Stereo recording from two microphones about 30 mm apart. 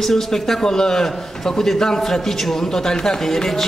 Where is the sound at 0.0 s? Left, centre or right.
Centre.